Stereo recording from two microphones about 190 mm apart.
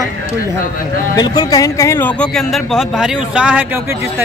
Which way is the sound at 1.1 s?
20° left (ahead or behind).